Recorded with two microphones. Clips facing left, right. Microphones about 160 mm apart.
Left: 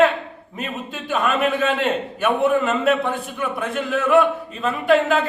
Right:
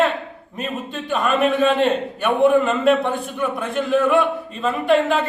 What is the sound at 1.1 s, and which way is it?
A man's voice, centre (ahead or behind).